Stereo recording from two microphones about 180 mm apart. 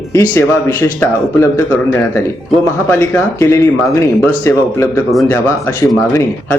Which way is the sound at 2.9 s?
15° left (ahead or behind).